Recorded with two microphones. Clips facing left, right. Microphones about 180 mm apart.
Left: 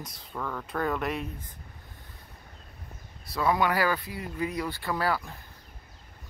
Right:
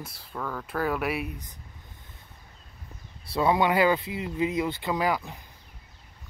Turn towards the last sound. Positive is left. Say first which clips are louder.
# right 2 dB
turn(degrees=-15)  # may be behind; listen again after turning